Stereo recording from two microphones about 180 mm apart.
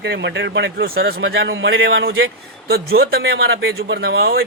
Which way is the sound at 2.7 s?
60° right (ahead or behind).